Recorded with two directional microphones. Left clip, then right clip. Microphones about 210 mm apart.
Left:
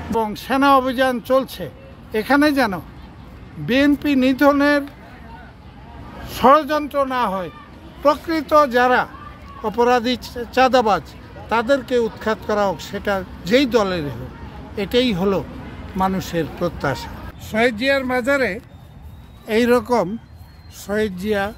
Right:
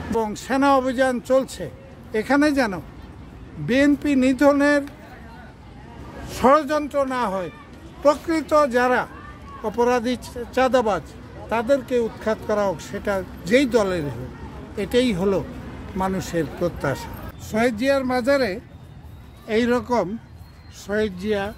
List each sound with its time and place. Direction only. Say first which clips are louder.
0.1 s speech: left 3 dB; 10° left (ahead or behind)
6.2 s a man's voice: left 3 dB; 10° left (ahead or behind)
19.4 s speech: left 5 dB; 50° left (ahead or behind)
20.8 s speech: left 2 dB; 35° left (ahead or behind)